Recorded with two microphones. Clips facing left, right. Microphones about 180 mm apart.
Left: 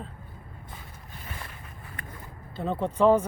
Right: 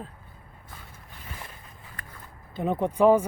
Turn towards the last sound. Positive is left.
turn(degrees=-10)  # may be behind; listen again after turning